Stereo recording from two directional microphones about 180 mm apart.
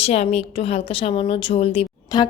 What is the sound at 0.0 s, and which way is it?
A woman's voice, 35° left (ahead or behind).